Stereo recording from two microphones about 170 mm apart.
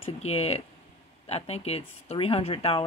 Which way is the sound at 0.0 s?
35° left (ahead or behind).